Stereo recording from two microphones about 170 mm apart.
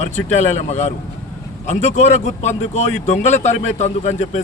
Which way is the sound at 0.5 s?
40° left (ahead or behind).